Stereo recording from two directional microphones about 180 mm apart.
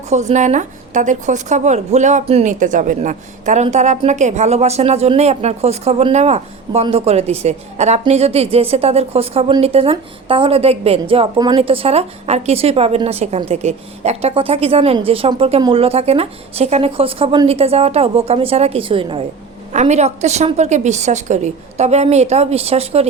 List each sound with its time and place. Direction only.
0.1 s a woman's voice: 40° right (ahead or behind)
19.7 s a woman's voice: 40° right (ahead or behind)